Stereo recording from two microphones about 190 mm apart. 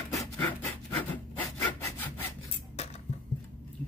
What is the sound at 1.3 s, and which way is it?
Sawing, 10° left (ahead or behind).